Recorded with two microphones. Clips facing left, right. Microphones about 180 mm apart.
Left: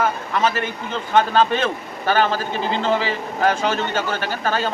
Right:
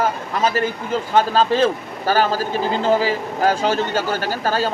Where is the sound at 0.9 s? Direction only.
5° right (ahead or behind).